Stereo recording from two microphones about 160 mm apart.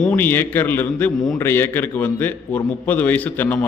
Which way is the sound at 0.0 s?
10° left (ahead or behind).